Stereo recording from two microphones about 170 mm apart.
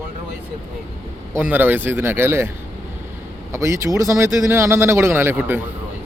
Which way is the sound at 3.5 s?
15° right (ahead or behind).